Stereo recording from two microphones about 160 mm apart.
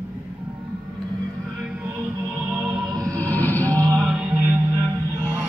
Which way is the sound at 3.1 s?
10° left (ahead or behind).